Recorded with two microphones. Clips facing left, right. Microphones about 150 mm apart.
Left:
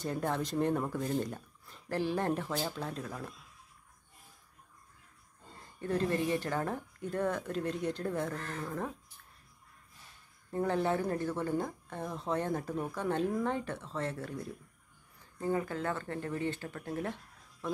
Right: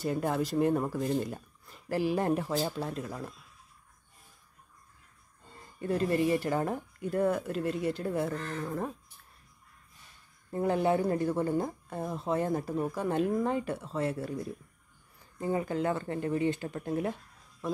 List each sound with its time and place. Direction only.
0.0 s speech: 5° right (ahead or behind)
5.8 s speech: 10° right (ahead or behind)
10.5 s speech: 10° right (ahead or behind)
15.3 s speech: 15° right (ahead or behind)